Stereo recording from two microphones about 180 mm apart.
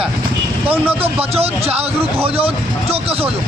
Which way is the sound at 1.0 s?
35° right (ahead or behind).